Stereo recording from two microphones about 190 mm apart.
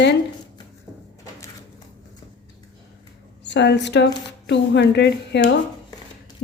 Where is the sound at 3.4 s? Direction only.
65° left (ahead or behind).